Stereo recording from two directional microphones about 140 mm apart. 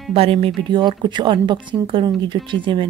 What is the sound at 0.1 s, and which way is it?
Speech, 40° right (ahead or behind).